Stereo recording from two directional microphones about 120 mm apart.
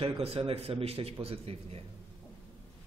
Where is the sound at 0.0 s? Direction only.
55° right (ahead or behind).